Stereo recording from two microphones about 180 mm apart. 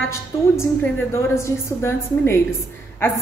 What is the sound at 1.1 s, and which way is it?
A woman's voice, 15° left (ahead or behind).